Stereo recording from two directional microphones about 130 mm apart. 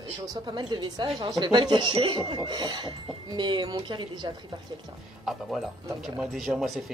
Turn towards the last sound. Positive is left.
turn(degrees=0)  # may be behind; listen again after turning